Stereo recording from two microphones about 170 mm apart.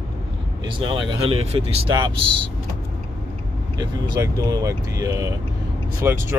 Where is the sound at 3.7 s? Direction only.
20° right (ahead or behind).